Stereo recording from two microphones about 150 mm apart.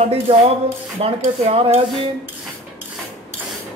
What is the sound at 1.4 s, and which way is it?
Stir, 45° right (ahead or behind).